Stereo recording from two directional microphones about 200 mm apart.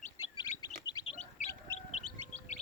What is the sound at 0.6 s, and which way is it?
Bird, 20° left (ahead or behind).